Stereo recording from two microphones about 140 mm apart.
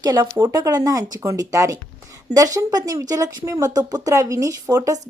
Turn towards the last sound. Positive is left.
turn(degrees=-25)  # may be behind; listen again after turning